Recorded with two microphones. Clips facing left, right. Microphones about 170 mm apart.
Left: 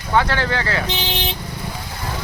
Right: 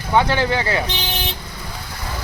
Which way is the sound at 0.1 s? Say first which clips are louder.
Right 2 dB; 15° right (ahead or behind).